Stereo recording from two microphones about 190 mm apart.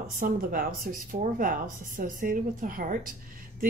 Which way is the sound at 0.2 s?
50° right (ahead or behind).